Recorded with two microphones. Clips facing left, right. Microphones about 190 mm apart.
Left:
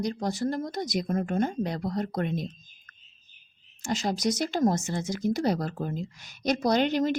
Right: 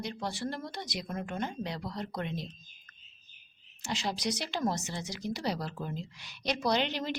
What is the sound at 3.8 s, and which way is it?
Speech, 45° left (ahead or behind).